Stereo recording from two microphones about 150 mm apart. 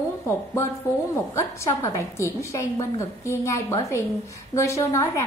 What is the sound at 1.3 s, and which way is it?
A woman's voice, 20° left (ahead or behind).